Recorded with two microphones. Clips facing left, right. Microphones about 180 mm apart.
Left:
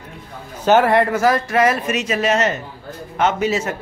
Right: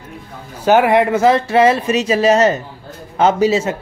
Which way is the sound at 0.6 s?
10° right (ahead or behind).